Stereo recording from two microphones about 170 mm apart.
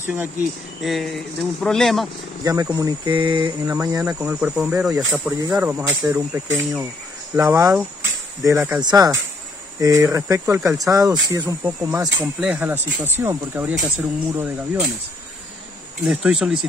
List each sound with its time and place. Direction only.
0.0 s speech: 10° right (ahead or behind)
0.7 s speech: centre (ahead or behind)
2.4 s speech: 20° right (ahead or behind)
3.1 s speech: 30° right (ahead or behind)
3.6 s speech: 15° right (ahead or behind)
12.2 s speech: 5° right (ahead or behind)
16.0 s speech: 5° right (ahead or behind)